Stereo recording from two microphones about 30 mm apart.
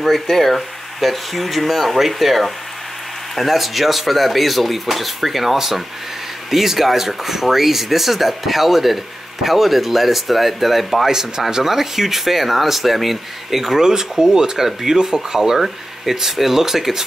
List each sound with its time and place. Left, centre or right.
0.1 s speech: centre
11.1 s speech: centre
13.7 s speech: centre